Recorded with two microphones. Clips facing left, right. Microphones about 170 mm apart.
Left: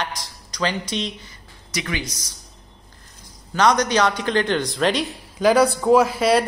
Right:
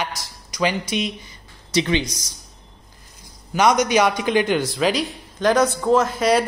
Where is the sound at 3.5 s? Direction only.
10° right (ahead or behind).